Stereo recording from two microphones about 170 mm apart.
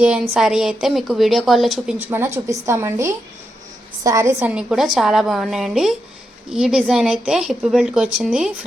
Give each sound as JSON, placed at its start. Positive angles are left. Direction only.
{"t": 0.0, "sound": "a woman's voice", "side_deg": -5}
{"t": 2.0, "sound": "a woman's voice", "side_deg": -15}
{"t": 4.4, "sound": "a woman's voice", "side_deg": -5}